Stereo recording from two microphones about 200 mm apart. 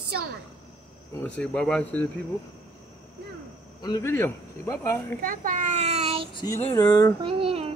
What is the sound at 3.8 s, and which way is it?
Speech, 15° left (ahead or behind).